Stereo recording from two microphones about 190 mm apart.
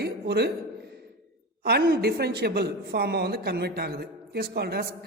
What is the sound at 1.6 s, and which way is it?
Speech, 55° right (ahead or behind).